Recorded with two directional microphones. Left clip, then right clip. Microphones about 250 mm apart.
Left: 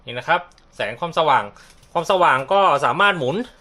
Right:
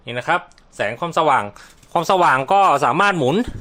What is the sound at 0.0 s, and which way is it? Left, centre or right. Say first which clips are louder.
Speech: even; right.